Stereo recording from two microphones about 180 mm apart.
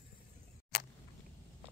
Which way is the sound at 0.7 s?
60° left (ahead or behind).